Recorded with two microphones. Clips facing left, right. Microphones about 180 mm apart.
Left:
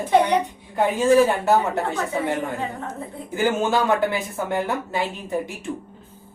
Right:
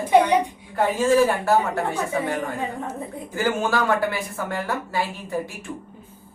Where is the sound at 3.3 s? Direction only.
20° left (ahead or behind).